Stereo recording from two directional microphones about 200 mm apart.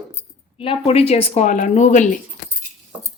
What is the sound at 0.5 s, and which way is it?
Speech, 25° left (ahead or behind).